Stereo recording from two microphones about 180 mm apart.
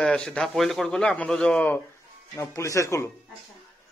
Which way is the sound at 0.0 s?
5° left (ahead or behind).